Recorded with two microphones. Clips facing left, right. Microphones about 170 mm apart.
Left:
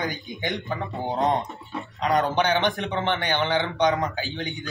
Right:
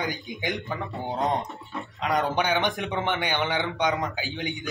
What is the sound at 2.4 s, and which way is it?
A man's voice, 5° right (ahead or behind).